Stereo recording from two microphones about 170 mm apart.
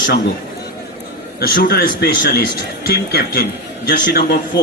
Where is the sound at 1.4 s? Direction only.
60° left (ahead or behind).